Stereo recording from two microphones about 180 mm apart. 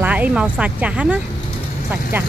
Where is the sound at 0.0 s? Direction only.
10° right (ahead or behind).